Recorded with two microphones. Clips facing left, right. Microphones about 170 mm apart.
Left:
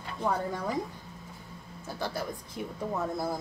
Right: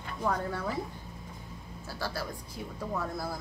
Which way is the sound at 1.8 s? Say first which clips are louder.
Left 2 dB; 20° left (ahead or behind).